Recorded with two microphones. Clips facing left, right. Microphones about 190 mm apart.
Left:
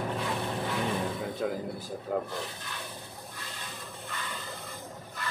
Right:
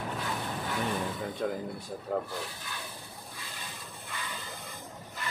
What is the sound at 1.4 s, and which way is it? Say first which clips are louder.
Speech: even; 5° left (ahead or behind).